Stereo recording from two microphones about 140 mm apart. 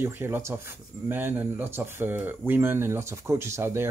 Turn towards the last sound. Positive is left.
turn(degrees=-15)  # may be behind; listen again after turning